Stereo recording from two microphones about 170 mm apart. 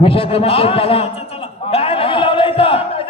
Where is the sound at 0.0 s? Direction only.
35° left (ahead or behind).